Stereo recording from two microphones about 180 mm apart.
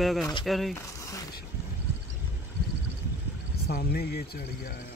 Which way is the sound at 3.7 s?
60° left (ahead or behind).